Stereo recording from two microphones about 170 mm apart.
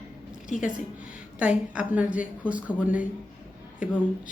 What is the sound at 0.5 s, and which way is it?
Speech, 50° left (ahead or behind).